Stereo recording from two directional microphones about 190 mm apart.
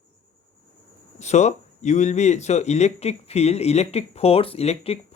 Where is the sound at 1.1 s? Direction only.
35° left (ahead or behind).